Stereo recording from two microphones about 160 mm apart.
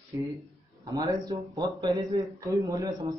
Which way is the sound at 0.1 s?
20° right (ahead or behind).